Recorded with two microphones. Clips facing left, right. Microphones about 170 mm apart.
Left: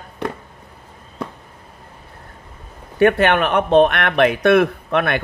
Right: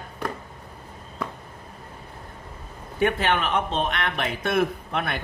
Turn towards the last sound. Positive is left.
turn(degrees=70)  # may be behind; listen again after turning